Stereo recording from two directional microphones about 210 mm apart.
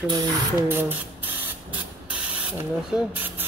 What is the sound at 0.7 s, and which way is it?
Spray, 10° right (ahead or behind).